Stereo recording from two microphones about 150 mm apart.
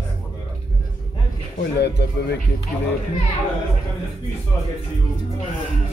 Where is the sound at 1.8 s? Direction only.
90° left.